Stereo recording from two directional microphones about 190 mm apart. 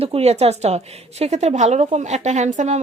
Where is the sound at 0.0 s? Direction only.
30° right (ahead or behind).